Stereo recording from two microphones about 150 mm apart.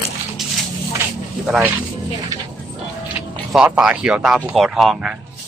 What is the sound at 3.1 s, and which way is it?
Speech, 5° right (ahead or behind).